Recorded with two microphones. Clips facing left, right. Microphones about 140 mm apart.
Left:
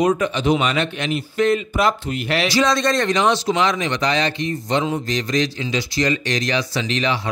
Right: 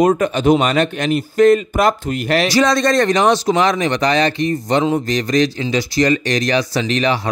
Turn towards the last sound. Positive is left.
turn(degrees=-45)  # may be behind; listen again after turning